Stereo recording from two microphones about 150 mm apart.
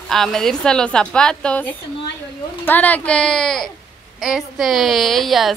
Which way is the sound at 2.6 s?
10° left (ahead or behind).